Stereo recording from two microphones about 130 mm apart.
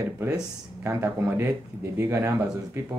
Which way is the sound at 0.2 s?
25° right (ahead or behind).